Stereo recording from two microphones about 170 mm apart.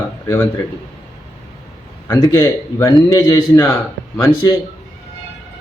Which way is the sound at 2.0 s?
15° left (ahead or behind).